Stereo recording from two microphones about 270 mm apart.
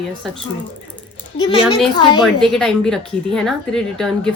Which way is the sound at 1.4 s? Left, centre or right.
Centre.